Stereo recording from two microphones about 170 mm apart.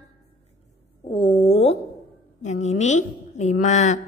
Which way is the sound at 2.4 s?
45° left (ahead or behind).